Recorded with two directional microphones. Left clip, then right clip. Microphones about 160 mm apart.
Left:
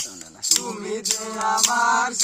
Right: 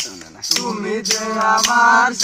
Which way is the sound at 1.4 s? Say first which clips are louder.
Right 6 dB; 20° left (ahead or behind).